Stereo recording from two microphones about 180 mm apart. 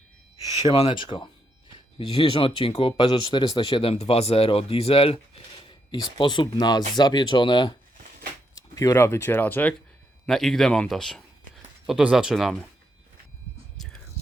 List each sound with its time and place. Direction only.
0.7 s speech: 30° left (ahead or behind); by 12.5 s centre (ahead or behind)